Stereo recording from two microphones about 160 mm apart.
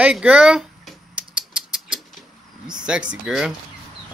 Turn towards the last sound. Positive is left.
turn(degrees=-5)  # may be behind; listen again after turning